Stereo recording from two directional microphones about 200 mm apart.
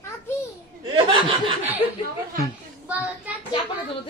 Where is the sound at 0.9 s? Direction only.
25° right (ahead or behind).